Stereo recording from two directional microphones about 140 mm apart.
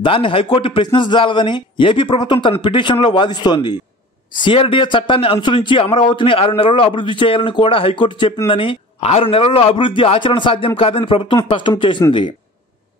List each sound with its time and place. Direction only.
0.0 s a man's voice: 40° left (ahead or behind)